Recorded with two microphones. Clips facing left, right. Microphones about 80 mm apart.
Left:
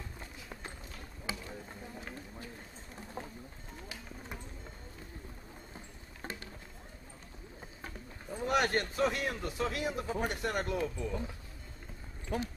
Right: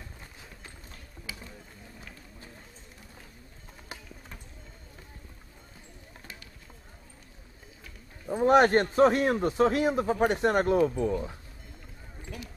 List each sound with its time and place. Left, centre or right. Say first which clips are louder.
1.3 s a sound: left 3 dB; left
8.5 s a man's voice: right 10 dB; right
10.0 s a man's voice: right 10 dB; right
12.3 s speech: left 8 dB; left